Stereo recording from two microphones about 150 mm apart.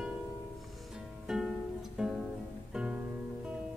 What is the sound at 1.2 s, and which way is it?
Music, 5° right (ahead or behind).